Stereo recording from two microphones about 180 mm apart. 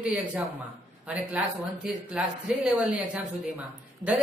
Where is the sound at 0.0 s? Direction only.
10° right (ahead or behind).